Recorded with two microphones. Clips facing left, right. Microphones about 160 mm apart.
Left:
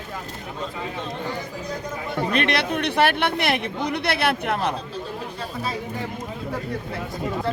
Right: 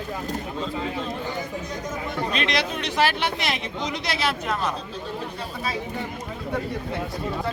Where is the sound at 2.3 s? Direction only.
60° left (ahead or behind).